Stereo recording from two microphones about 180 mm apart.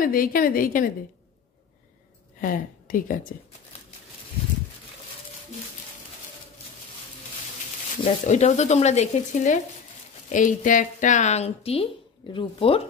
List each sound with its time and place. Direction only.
0.0 s a woman's voice: 50° left (ahead or behind)
2.4 s speech: 50° left (ahead or behind)
8.0 s a woman's voice: 40° left (ahead or behind)